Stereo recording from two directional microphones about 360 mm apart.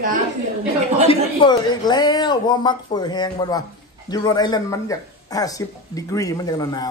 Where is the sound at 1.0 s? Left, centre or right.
Centre.